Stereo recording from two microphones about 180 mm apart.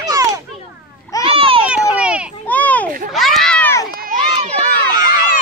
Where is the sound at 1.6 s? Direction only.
5° right (ahead or behind).